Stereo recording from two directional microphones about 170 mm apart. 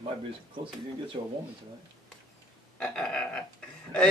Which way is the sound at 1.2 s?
35° right (ahead or behind).